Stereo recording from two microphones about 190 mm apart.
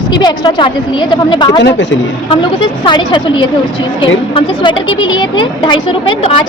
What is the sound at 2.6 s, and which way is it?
Speech, 25° left (ahead or behind).